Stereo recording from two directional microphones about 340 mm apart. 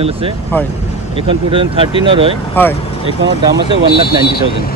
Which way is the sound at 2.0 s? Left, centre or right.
Centre.